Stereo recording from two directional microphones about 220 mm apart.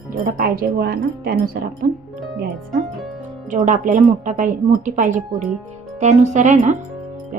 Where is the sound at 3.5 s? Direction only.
35° right (ahead or behind).